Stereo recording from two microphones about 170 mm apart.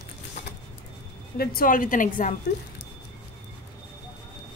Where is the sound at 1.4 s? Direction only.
60° left (ahead or behind).